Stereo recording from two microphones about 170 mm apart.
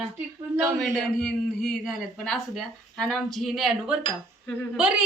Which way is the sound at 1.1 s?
5° left (ahead or behind).